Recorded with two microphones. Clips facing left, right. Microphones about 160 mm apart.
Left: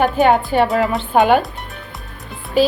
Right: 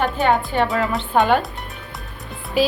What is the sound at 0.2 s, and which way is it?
Speech, 15° left (ahead or behind).